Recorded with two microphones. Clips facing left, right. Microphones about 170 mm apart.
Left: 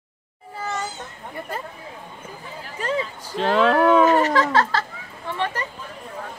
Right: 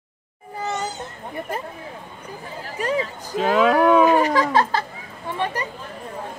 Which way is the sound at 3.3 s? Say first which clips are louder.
Right 1 dB; 5° right (ahead or behind).